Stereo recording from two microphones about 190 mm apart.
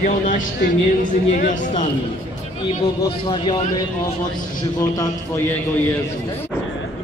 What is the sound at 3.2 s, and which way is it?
Speech, 25° left (ahead or behind).